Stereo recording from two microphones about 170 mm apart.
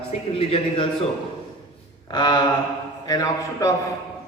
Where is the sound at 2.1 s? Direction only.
25° left (ahead or behind).